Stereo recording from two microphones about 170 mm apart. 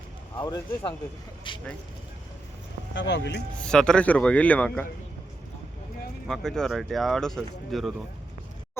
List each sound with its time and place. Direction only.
0.3 s speech: 20° left (ahead or behind)
2.9 s speech: 90° left
3.6 s a man's voice: 5° left (ahead or behind)
6.2 s speech: centre (ahead or behind)